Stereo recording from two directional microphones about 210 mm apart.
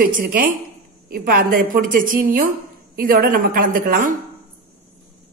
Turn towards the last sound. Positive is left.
turn(degrees=-40)  # may be behind; listen again after turning